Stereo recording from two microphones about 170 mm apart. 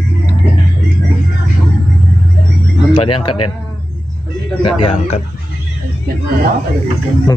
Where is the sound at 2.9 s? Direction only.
30° left (ahead or behind).